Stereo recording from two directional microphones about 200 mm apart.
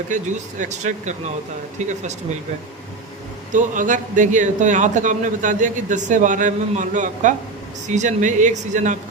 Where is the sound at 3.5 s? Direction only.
40° right (ahead or behind).